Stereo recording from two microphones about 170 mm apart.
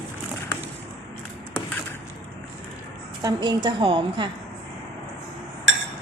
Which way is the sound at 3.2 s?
25° right (ahead or behind).